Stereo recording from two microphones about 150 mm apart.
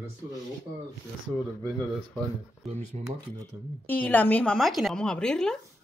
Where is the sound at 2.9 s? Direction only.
45° right (ahead or behind).